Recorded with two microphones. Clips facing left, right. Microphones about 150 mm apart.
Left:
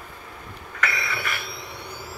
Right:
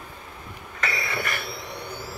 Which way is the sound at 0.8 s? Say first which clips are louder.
Left 1 dB; 40° right (ahead or behind).